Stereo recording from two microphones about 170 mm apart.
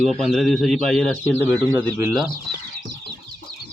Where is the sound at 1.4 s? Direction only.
15° right (ahead or behind).